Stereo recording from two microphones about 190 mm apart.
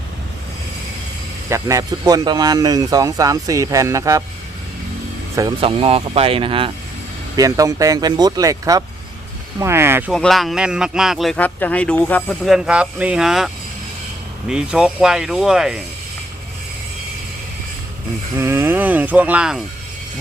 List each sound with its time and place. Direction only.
1.5 s speech: 15° right (ahead or behind)
5.4 s speech: 25° right (ahead or behind)
7.3 s speech: 15° right (ahead or behind)
10.1 s speech: centre (ahead or behind)
18.3 s speech: 10° right (ahead or behind)